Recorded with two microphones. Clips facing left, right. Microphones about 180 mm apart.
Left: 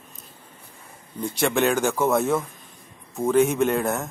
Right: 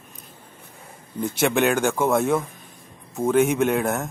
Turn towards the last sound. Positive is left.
turn(degrees=0)  # may be behind; listen again after turning